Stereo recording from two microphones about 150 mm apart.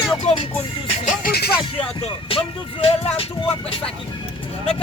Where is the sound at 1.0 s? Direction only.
80° left.